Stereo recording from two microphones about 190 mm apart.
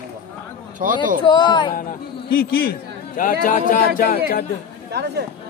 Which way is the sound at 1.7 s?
45° left (ahead or behind).